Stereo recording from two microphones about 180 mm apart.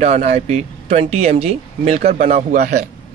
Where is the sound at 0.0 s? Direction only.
40° right (ahead or behind).